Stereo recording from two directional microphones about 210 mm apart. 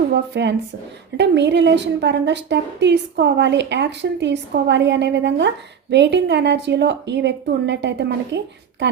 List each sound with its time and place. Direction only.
0.1 s a woman's voice: 55° right (ahead or behind)